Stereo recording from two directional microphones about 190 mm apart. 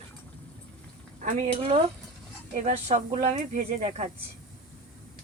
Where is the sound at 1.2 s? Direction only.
40° right (ahead or behind).